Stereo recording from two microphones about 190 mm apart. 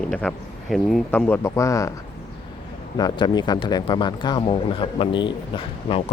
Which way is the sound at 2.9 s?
20° left (ahead or behind).